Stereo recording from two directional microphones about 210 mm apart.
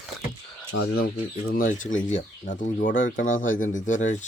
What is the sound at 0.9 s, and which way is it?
Speech, 45° left (ahead or behind).